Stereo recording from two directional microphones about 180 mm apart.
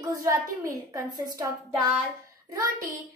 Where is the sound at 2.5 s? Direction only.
20° right (ahead or behind).